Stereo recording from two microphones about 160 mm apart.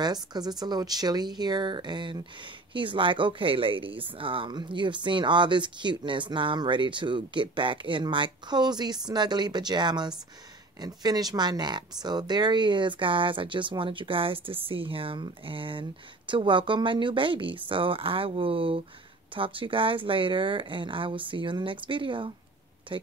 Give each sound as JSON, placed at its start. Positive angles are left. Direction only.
{"t": 0.0, "sound": "speech", "side_deg": -25}